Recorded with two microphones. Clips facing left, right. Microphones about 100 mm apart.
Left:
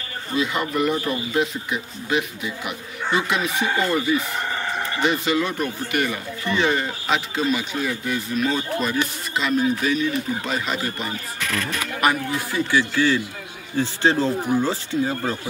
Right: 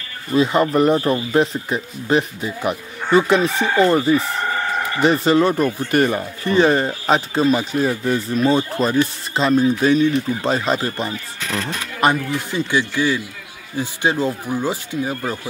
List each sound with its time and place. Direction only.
0.3 s speech: 35° right (ahead or behind); by 15.3 s 15° right (ahead or behind)